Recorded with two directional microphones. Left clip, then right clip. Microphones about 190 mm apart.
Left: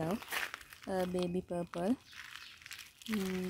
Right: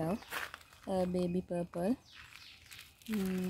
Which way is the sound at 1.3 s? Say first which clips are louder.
Right 1 dB; centre (ahead or behind).